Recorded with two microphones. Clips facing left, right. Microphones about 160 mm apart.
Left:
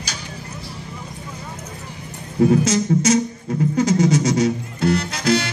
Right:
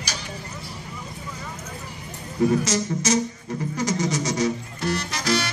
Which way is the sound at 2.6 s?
60° left (ahead or behind).